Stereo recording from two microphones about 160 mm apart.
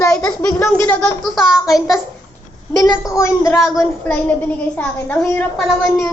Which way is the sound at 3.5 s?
Centre (ahead or behind).